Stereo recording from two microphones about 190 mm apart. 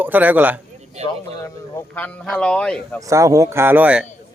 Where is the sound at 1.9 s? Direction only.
5° left (ahead or behind).